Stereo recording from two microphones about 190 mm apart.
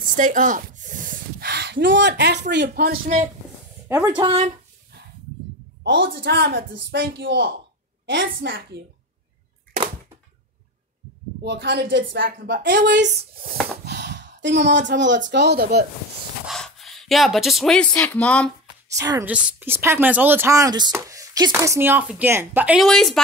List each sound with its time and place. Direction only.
0.0 s speech: 45° right (ahead or behind)
3.9 s speech: 10° right (ahead or behind)
4.2 s speech: 30° right (ahead or behind)
5.9 s a woman's voice: 60° right (ahead or behind)
11.4 s a woman's voice: 60° right (ahead or behind)
16.4 s speech: centre (ahead or behind)
18.9 s speech: 15° right (ahead or behind); by 23.2 s centre (ahead or behind)